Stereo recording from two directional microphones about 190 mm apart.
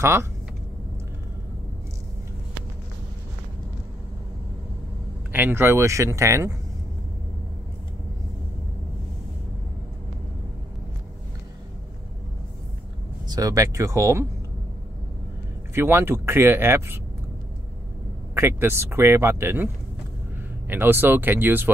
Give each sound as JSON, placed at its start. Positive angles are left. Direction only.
{"t": 0.0, "sound": "speech", "side_deg": -15}
{"t": 5.3, "sound": "speech", "side_deg": -10}
{"t": 13.3, "sound": "speech", "side_deg": -15}
{"t": 15.7, "sound": "speech", "side_deg": -10}
{"t": 18.3, "sound": "speech", "side_deg": -10}